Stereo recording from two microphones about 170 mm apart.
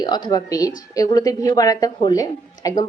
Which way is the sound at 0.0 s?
25° left (ahead or behind).